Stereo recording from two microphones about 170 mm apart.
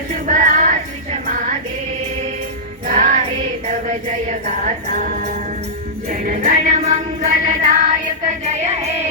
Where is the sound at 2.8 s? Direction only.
50° right (ahead or behind).